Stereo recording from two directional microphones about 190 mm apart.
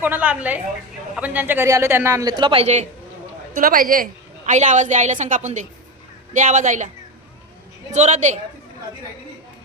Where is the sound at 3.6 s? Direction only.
45° right (ahead or behind).